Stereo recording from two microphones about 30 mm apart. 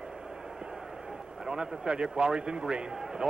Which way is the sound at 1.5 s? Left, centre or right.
Right.